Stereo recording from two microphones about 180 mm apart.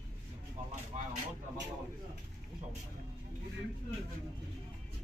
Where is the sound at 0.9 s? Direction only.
40° right (ahead or behind).